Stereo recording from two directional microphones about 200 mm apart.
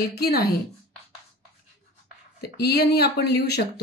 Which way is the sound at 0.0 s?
50° left (ahead or behind).